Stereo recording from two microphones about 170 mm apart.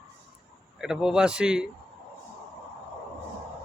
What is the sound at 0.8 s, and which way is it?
Speech, 5° right (ahead or behind).